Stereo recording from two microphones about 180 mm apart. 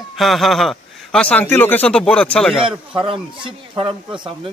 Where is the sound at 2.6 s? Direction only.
30° right (ahead or behind).